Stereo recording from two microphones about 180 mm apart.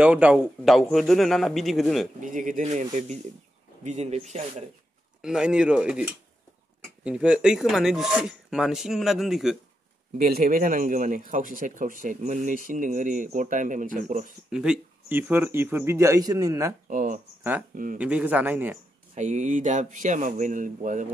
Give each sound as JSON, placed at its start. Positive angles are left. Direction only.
{"t": 0.0, "sound": "speech", "side_deg": -5}
{"t": 2.1, "sound": "speech", "side_deg": -45}
{"t": 5.2, "sound": "speech", "side_deg": -5}
{"t": 10.1, "sound": "speech", "side_deg": -55}
{"t": 14.5, "sound": "speech", "side_deg": -5}
{"t": 16.8, "sound": "speech", "side_deg": -45}
{"t": 17.4, "sound": "speech", "side_deg": -10}
{"t": 19.1, "sound": "speech", "side_deg": -40}